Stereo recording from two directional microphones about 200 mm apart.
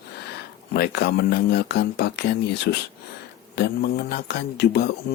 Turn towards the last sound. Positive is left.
turn(degrees=55)  # may be behind; listen again after turning